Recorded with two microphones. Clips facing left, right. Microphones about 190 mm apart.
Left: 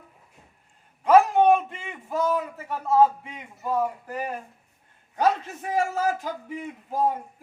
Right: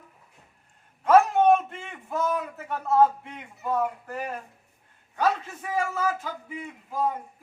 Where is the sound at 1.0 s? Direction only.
10° left (ahead or behind).